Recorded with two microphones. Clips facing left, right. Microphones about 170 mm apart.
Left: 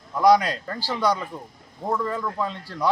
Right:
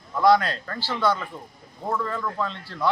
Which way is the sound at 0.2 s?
15° left (ahead or behind).